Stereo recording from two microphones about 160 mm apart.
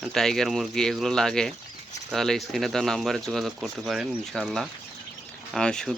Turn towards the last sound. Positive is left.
turn(degrees=5)  # may be behind; listen again after turning